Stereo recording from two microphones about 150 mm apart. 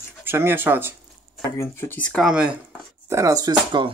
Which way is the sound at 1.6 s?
15° left (ahead or behind).